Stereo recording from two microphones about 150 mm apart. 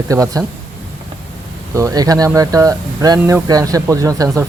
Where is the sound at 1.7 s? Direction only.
25° right (ahead or behind).